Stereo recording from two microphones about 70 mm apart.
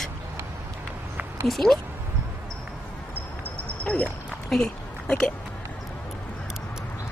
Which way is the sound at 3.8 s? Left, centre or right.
Centre.